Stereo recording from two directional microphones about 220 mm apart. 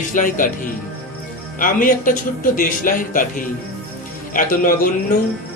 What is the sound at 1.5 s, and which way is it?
Speech, 40° left (ahead or behind).